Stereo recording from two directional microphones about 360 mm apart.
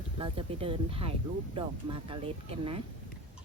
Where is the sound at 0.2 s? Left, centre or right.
Centre.